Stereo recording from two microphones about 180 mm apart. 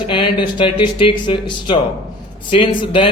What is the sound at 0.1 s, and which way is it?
A man's voice, 25° left (ahead or behind).